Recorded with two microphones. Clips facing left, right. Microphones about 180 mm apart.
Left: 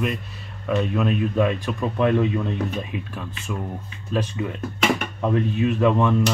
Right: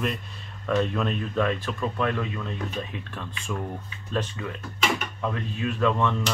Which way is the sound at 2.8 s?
5° left (ahead or behind).